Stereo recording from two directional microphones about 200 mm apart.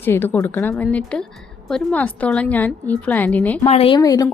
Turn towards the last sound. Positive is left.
turn(degrees=20)  # may be behind; listen again after turning